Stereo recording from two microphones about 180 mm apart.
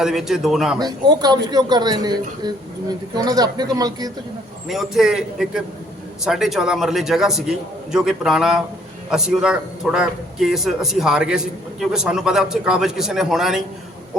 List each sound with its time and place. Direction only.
0.0 s a man's voice: centre (ahead or behind)
0.8 s a man's voice: 20° right (ahead or behind)
4.7 s a man's voice: centre (ahead or behind)